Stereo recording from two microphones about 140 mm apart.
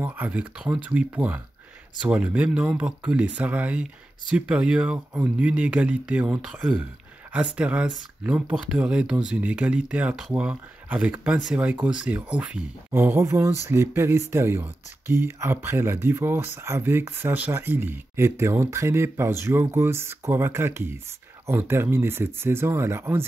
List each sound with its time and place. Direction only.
0.0 s speech: 10° right (ahead or behind)